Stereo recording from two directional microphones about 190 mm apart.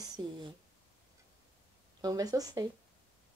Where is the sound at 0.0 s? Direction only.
20° right (ahead or behind).